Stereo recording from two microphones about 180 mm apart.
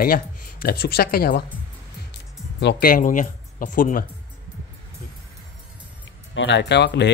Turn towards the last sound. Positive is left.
turn(degrees=70)  # may be behind; listen again after turning